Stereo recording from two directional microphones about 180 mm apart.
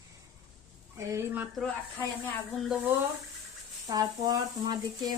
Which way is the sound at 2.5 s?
5° right (ahead or behind).